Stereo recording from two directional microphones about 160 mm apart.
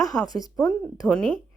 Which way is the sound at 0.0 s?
Centre (ahead or behind).